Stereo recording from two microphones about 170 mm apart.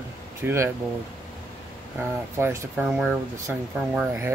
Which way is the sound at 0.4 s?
15° right (ahead or behind).